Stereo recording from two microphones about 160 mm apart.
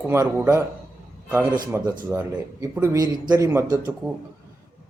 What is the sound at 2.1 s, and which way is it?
A man's voice, 10° right (ahead or behind).